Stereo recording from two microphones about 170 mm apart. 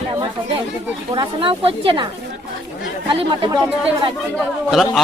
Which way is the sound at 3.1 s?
30° right (ahead or behind).